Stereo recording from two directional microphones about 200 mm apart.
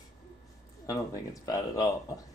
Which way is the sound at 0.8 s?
15° left (ahead or behind).